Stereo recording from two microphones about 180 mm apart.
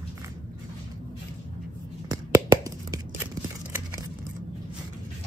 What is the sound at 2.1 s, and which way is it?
Finger snapping, 20° right (ahead or behind).